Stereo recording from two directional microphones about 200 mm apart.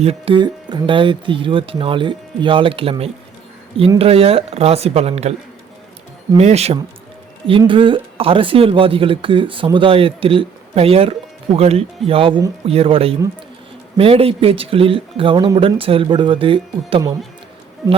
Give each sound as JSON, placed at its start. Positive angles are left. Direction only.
{"t": 0.0, "sound": "speech", "side_deg": -30}
{"t": 6.3, "sound": "speech", "side_deg": -30}